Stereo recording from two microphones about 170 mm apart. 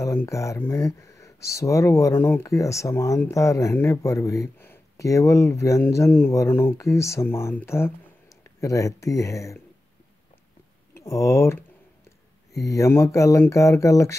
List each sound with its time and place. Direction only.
0.0 s speech: 20° left (ahead or behind)
11.1 s speech: 15° left (ahead or behind)